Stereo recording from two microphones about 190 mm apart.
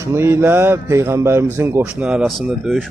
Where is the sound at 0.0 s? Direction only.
15° right (ahead or behind).